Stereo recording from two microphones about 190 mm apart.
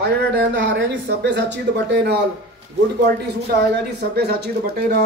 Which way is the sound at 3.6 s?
60° right (ahead or behind).